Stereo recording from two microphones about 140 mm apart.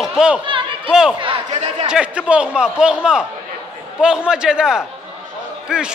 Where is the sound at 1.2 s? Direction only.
40° right (ahead or behind).